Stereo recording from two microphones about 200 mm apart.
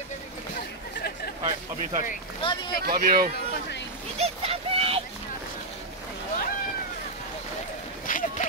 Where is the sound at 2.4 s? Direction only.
25° left (ahead or behind).